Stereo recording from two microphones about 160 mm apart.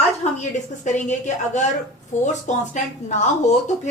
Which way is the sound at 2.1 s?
50° left (ahead or behind).